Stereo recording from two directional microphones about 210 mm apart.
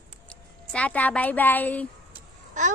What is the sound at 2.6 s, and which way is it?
Speech, 35° right (ahead or behind).